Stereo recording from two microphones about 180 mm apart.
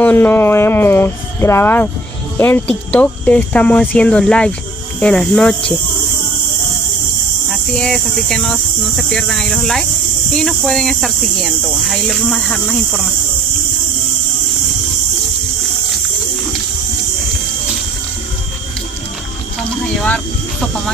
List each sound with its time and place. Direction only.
0.0 s speech: 10° left (ahead or behind)
7.4 s speech: centre (ahead or behind)